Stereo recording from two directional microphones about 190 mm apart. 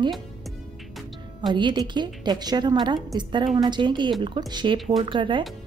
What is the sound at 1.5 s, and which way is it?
A woman's voice, 25° right (ahead or behind).